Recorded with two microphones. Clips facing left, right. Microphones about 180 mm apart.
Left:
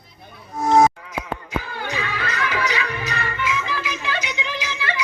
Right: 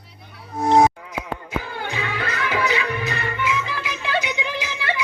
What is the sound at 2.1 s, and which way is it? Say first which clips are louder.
Music: right 3 dB; 55° right (ahead or behind).